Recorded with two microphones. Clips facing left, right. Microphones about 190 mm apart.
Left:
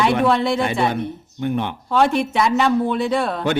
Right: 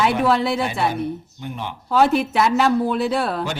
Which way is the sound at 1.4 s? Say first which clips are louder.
Left 8 dB; 60° left (ahead or behind).